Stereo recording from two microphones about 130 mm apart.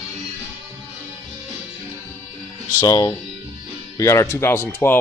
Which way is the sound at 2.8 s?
30° left (ahead or behind).